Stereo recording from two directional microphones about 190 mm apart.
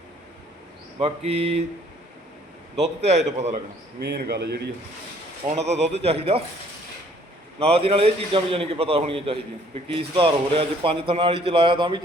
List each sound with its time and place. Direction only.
0.9 s a man's voice: 30° right (ahead or behind)
2.8 s a man's voice: 35° right (ahead or behind)
4.0 s speech: 60° right (ahead or behind)
5.5 s a man's voice: 35° right (ahead or behind)
7.6 s a man's voice: 30° right (ahead or behind)